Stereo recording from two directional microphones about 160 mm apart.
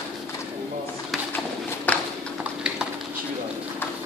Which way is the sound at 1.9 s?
10° left (ahead or behind).